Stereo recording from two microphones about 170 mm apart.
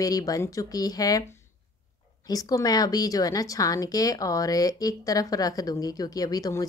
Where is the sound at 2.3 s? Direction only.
20° left (ahead or behind).